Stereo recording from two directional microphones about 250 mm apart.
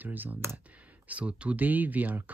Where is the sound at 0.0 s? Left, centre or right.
Centre.